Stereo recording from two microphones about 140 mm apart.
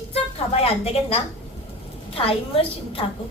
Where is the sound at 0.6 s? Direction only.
45° left (ahead or behind).